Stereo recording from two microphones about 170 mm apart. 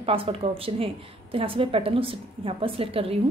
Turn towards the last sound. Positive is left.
turn(degrees=-35)  # may be behind; listen again after turning